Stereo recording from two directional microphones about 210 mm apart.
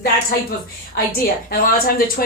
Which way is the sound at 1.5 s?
45° left (ahead or behind).